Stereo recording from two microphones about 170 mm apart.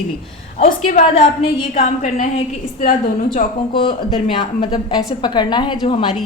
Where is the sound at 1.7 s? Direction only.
45° left (ahead or behind).